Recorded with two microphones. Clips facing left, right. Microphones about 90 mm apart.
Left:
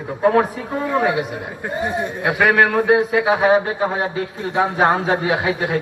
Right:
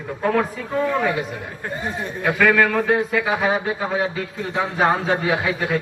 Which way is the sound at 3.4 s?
50° left (ahead or behind).